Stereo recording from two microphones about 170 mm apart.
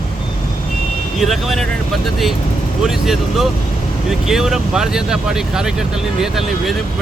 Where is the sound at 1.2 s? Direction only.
Centre (ahead or behind).